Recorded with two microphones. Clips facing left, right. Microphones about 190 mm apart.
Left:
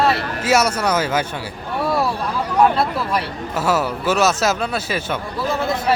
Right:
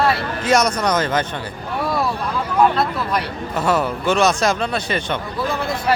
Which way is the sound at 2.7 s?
5° left (ahead or behind).